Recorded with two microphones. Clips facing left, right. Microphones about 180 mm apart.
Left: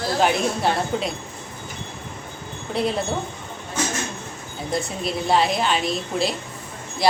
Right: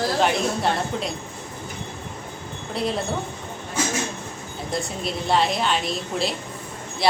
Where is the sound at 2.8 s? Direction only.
Centre (ahead or behind).